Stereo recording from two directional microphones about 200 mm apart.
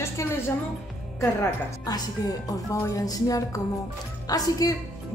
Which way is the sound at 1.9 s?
20° left (ahead or behind).